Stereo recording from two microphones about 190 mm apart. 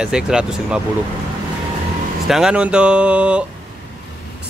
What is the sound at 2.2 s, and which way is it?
Speech, 5° right (ahead or behind).